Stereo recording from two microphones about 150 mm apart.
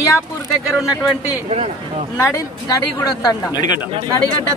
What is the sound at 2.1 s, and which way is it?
Speech, 20° left (ahead or behind).